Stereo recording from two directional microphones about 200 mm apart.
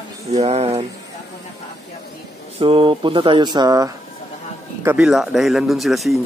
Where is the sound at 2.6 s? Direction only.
25° right (ahead or behind).